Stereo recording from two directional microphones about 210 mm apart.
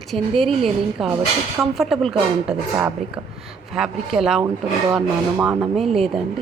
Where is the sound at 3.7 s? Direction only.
Centre (ahead or behind).